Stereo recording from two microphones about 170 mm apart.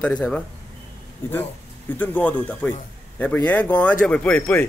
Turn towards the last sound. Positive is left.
turn(degrees=10)  # may be behind; listen again after turning